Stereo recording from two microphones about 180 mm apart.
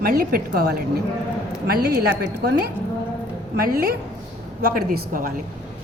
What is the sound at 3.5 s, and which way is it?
A woman's voice, 55° right (ahead or behind).